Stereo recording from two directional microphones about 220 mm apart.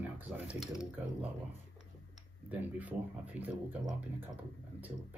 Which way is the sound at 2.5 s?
5° right (ahead or behind).